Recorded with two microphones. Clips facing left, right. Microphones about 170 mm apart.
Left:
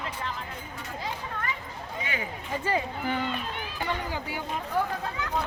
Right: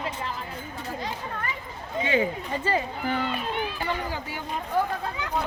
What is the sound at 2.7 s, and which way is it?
Speech, 15° left (ahead or behind).